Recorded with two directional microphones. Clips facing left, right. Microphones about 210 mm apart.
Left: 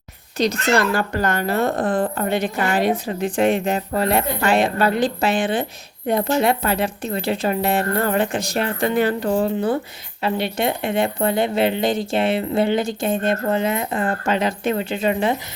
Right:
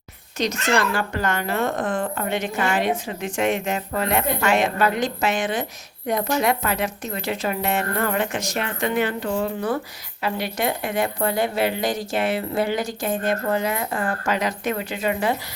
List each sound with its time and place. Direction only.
0.7 s a woman's voice: 40° left (ahead or behind)